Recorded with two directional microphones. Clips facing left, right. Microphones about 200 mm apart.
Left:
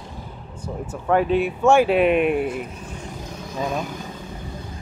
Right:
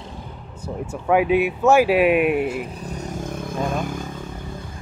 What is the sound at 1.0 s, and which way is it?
Speech, 10° right (ahead or behind).